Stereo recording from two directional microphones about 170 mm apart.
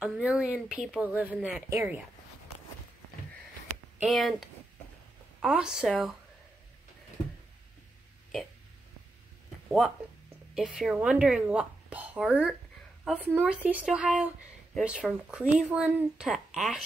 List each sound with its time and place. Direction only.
0.0 s speech: 5° right (ahead or behind)
4.0 s speech: centre (ahead or behind)
9.7 s speech: centre (ahead or behind)